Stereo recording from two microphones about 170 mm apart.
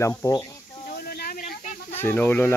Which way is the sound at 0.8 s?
60° left (ahead or behind).